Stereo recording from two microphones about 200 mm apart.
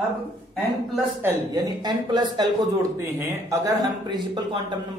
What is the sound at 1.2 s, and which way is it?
Speech, 20° right (ahead or behind).